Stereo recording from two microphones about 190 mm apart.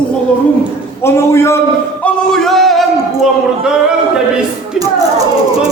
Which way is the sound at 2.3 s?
Centre (ahead or behind).